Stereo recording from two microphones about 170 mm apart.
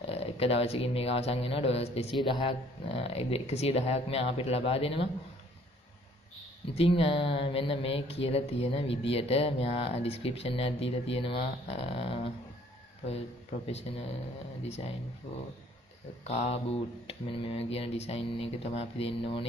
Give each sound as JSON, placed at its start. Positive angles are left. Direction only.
{"t": 0.0, "sound": "speech", "side_deg": 35}
{"t": 6.7, "sound": "speech", "side_deg": 35}
{"t": 13.7, "sound": "speech", "side_deg": 35}
{"t": 16.3, "sound": "speech", "side_deg": 40}